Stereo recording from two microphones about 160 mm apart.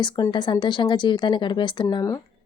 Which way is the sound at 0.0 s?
30° left (ahead or behind).